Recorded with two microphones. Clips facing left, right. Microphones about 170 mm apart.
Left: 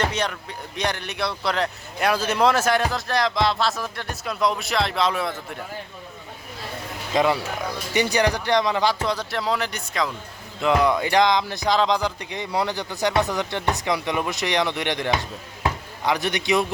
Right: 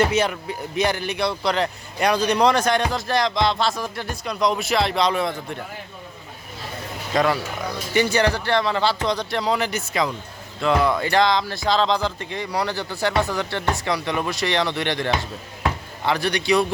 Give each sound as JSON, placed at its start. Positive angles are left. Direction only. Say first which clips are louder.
{"t": 0.0, "sound": "speech", "louder": "right 5 dB", "side_deg": -10}
{"t": 7.9, "sound": "speech", "louder": "right 2 dB", "side_deg": 15}
{"t": 10.6, "sound": "a man's voice", "louder": "even", "side_deg": 15}